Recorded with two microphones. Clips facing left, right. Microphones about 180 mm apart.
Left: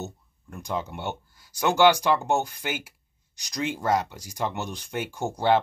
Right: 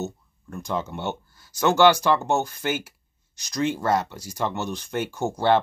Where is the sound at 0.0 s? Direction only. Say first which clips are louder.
Right 5 dB; 15° left (ahead or behind).